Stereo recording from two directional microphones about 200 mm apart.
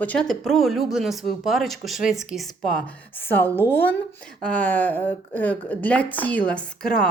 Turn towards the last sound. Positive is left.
turn(degrees=5)  # may be behind; listen again after turning